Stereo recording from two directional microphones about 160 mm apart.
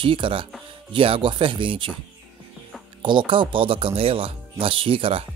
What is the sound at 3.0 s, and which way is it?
Speech, 30° right (ahead or behind).